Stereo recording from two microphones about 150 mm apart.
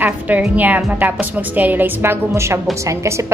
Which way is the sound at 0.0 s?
10° right (ahead or behind).